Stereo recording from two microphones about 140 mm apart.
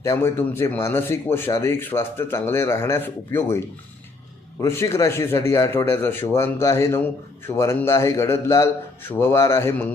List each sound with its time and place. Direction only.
0.0 s speech: 20° left (ahead or behind)
4.6 s speech: 20° left (ahead or behind)